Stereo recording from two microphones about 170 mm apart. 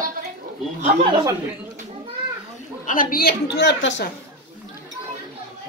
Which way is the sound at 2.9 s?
55° left (ahead or behind).